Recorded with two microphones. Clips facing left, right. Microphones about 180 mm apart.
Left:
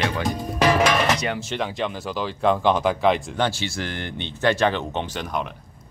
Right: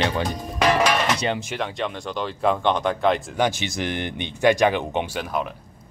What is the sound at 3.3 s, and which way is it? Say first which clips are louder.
Speech: right 1 dB; 15° right (ahead or behind).